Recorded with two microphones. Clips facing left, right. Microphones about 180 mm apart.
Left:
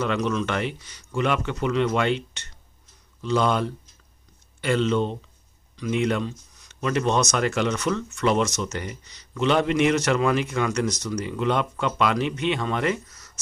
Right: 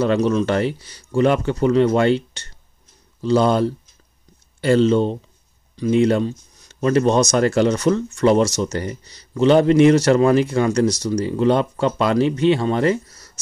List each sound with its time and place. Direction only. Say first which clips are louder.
0.0 s speech: right 7 dB; 35° right (ahead or behind)